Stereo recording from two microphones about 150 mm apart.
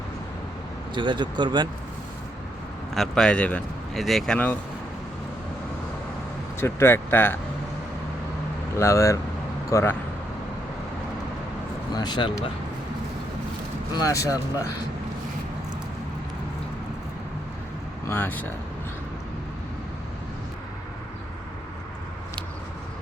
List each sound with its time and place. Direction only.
0.9 s speech: 30° right (ahead or behind)
2.9 s speech: centre (ahead or behind)
6.6 s speech: 15° left (ahead or behind)
8.7 s speech: 20° left (ahead or behind)
11.9 s speech: 30° left (ahead or behind)
13.9 s speech: 20° left (ahead or behind)
18.1 s speech: 15° left (ahead or behind)